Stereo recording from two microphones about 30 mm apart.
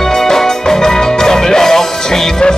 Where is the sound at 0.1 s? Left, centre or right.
Centre.